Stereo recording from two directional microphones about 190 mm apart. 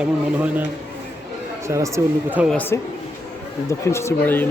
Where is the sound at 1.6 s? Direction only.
15° right (ahead or behind).